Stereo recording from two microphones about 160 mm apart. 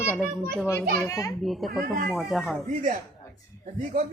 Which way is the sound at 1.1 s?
20° left (ahead or behind).